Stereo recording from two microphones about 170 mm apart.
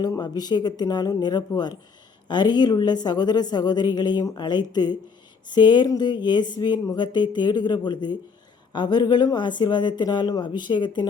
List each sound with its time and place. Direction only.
0.0 s a woman's voice: 25° left (ahead or behind)